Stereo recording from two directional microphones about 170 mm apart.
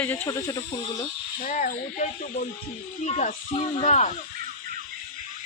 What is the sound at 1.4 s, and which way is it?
Speech, 50° left (ahead or behind).